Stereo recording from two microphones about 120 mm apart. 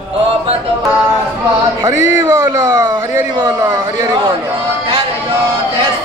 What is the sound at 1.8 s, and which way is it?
Speech, 25° right (ahead or behind).